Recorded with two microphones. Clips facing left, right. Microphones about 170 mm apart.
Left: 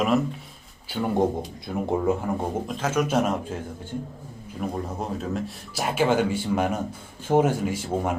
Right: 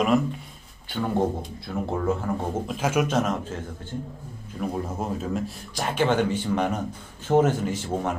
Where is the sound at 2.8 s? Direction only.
10° right (ahead or behind).